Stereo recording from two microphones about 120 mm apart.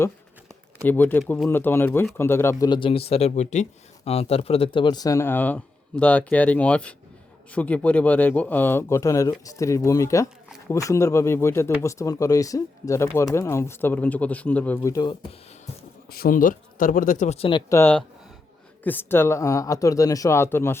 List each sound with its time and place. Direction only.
0.9 s speech: 15° left (ahead or behind)
2.6 s speech: 45° left (ahead or behind); by 14.8 s 15° left (ahead or behind)
14.8 s speech: 30° left (ahead or behind)
17.1 s speech: 80° left; by 17.5 s 60° left (ahead or behind)
17.7 s speech: 20° left (ahead or behind)